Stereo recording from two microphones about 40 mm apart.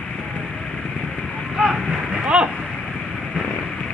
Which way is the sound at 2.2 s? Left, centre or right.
Right.